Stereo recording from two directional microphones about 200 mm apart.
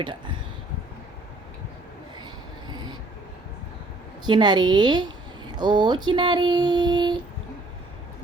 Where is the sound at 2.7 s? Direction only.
20° right (ahead or behind).